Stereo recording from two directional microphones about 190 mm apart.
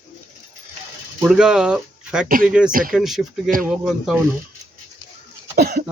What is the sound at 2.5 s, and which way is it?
Speech, 5° right (ahead or behind).